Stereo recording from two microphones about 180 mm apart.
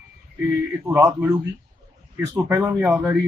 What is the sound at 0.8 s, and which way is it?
Speech, 15° right (ahead or behind).